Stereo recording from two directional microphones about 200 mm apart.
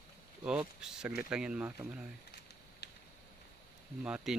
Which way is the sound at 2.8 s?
55° left (ahead or behind).